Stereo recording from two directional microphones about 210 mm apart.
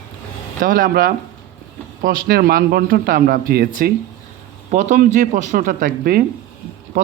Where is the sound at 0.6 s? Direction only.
40° right (ahead or behind).